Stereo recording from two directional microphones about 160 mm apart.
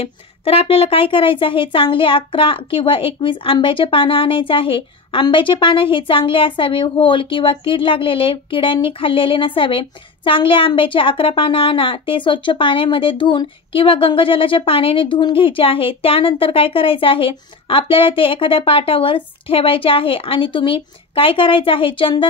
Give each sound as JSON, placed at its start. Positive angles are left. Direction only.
{"t": 0.0, "sound": "speech", "side_deg": 35}